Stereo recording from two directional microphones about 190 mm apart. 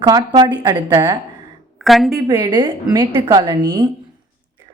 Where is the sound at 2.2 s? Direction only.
20° right (ahead or behind).